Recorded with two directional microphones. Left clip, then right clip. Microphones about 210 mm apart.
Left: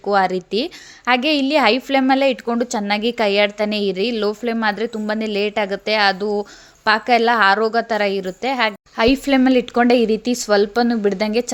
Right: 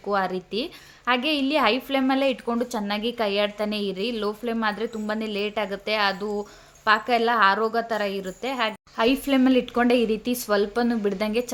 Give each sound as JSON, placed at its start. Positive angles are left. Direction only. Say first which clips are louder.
{"t": 0.0, "sound": "a woman's voice", "louder": "left 8 dB", "side_deg": 30}